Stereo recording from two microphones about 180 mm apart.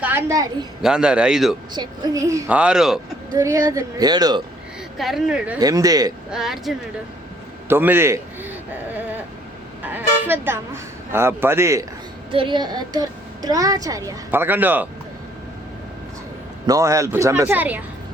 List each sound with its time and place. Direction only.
0.0 s a woman's voice: 10° right (ahead or behind)
0.8 s a man's voice: 5° right (ahead or behind)
1.7 s speech: 20° right (ahead or behind); by 3.0 s centre (ahead or behind)
3.3 s a woman's voice: 15° right (ahead or behind)
4.9 s a man's voice: centre (ahead or behind)
5.5 s a woman's voice: 20° right (ahead or behind)
6.3 s a man's voice: centre (ahead or behind)
12.3 s a woman's voice: 30° right (ahead or behind); by 14.8 s 10° right (ahead or behind)
16.6 s speech: 20° right (ahead or behind)